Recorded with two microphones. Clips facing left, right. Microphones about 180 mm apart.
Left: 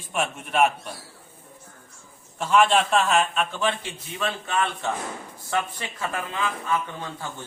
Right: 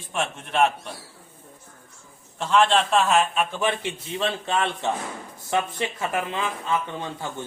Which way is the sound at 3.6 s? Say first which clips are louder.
Right 1 dB; 25° right (ahead or behind).